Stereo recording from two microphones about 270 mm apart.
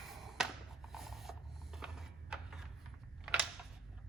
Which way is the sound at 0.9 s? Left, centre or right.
Centre.